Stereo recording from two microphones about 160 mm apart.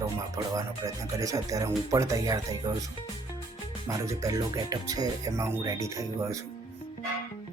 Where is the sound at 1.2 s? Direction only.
20° right (ahead or behind).